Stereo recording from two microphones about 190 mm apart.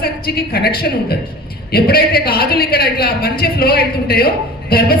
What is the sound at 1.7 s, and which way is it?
A woman's voice, 50° left (ahead or behind).